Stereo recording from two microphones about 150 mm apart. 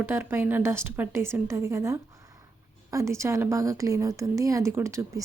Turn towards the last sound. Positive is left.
turn(degrees=-20)  # may be behind; listen again after turning